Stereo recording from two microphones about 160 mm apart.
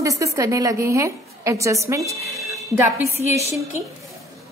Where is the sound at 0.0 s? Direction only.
20° right (ahead or behind).